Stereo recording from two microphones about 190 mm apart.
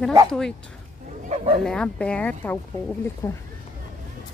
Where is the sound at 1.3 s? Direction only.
35° right (ahead or behind).